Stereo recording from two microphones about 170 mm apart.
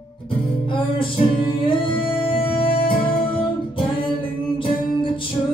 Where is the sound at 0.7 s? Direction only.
30° left (ahead or behind).